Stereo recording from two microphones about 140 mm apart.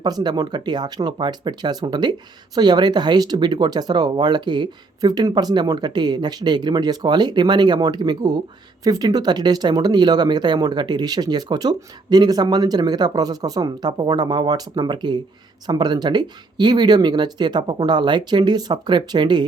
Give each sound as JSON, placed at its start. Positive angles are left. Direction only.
{"t": 0.0, "sound": "speech", "side_deg": -30}